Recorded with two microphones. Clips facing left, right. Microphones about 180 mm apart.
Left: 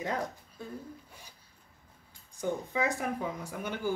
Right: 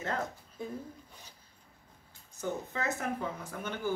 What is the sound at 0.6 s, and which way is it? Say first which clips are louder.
Speech: right 3 dB; 15° right (ahead or behind).